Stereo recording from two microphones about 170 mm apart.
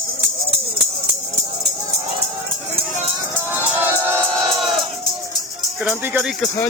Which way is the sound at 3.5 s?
10° right (ahead or behind).